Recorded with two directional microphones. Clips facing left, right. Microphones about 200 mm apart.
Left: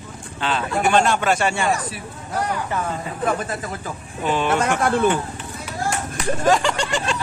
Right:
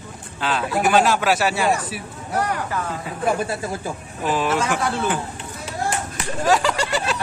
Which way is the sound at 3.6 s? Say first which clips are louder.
Right 3 dB; 30° right (ahead or behind).